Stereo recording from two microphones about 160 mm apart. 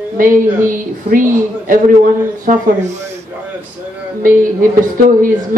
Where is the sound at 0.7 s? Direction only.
60° right (ahead or behind).